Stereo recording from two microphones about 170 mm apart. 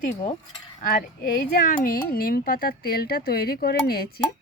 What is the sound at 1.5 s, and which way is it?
Speech, 55° left (ahead or behind).